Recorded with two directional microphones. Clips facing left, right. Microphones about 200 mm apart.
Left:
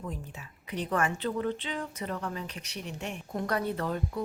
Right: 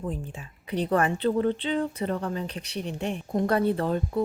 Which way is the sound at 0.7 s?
35° right (ahead or behind).